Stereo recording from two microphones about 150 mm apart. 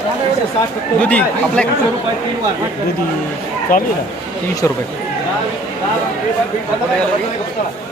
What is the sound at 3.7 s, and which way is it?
Speech, 75° left (ahead or behind).